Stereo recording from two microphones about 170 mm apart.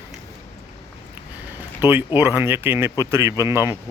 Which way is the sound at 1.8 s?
10° right (ahead or behind).